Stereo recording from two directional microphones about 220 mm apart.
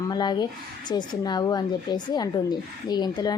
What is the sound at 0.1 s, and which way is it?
A woman's voice, 20° left (ahead or behind).